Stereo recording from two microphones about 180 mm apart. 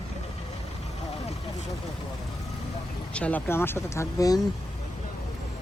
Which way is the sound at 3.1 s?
10° left (ahead or behind).